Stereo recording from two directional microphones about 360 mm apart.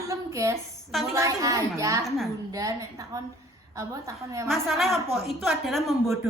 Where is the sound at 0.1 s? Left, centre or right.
Centre.